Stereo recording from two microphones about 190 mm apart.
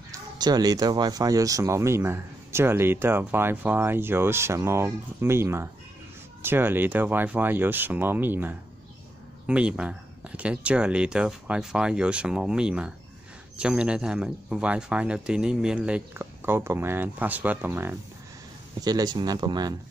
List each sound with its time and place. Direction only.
0.4 s speech: 20° right (ahead or behind)